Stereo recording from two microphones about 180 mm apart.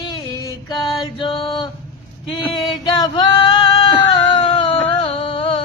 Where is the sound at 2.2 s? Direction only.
25° left (ahead or behind).